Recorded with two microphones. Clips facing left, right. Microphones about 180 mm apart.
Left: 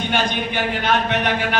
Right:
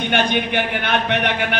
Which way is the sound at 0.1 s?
60° right (ahead or behind).